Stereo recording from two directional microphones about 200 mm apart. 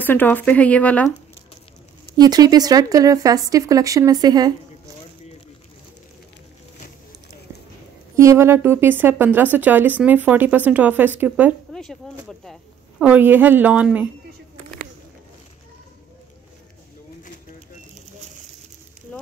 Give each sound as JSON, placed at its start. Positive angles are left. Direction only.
{"t": 0.0, "sound": "a woman's voice", "side_deg": 10}
{"t": 2.1, "sound": "speech", "side_deg": -20}
{"t": 8.2, "sound": "speech", "side_deg": -15}
{"t": 11.7, "sound": "a sound", "side_deg": 0}
{"t": 13.0, "sound": "speech", "side_deg": -10}
{"t": 19.1, "sound": "a sound", "side_deg": 5}